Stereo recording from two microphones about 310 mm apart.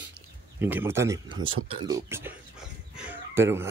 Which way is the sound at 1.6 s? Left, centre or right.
Right.